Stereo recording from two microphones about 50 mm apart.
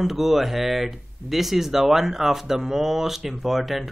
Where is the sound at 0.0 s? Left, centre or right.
Centre.